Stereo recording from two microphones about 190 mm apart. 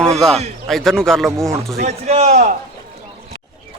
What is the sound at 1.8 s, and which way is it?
Speech, 35° right (ahead or behind).